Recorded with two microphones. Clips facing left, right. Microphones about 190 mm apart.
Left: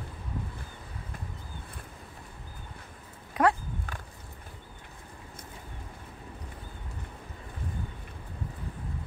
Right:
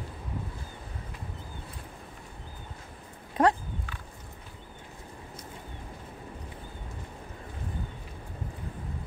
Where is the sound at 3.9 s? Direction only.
45° left (ahead or behind).